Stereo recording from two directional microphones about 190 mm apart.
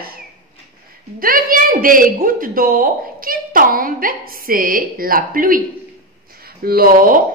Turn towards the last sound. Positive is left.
turn(degrees=-45)  # may be behind; listen again after turning